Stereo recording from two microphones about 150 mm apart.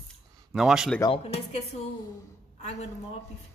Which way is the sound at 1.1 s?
45° left (ahead or behind).